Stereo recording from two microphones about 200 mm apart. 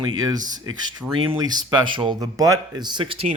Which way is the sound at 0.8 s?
20° right (ahead or behind).